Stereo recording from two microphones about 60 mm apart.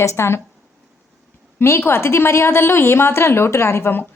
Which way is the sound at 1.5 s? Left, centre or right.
Left.